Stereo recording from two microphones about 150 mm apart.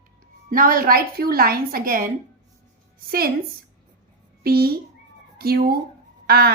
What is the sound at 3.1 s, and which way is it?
Speech, 90° right.